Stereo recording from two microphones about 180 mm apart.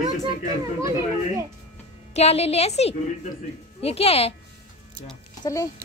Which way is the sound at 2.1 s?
35° left (ahead or behind).